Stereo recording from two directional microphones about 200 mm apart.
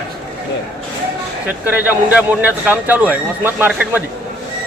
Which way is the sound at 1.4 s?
10° right (ahead or behind).